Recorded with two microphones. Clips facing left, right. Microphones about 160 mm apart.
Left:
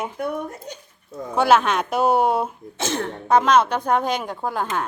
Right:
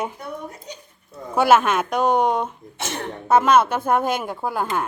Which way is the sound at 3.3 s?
5° right (ahead or behind).